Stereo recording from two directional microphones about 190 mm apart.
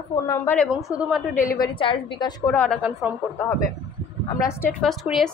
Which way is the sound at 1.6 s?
25° left (ahead or behind).